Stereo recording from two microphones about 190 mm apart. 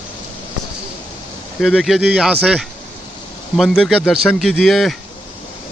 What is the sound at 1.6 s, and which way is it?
Speech, centre (ahead or behind).